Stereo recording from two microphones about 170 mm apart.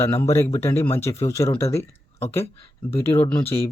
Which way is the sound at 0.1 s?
15° left (ahead or behind).